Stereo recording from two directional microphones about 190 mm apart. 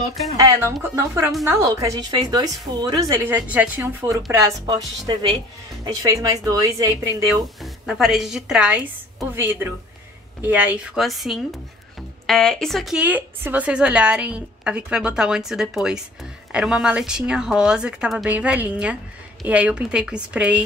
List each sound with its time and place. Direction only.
0.4 s a woman's voice: 10° right (ahead or behind)
7.6 s a woman's voice: centre (ahead or behind)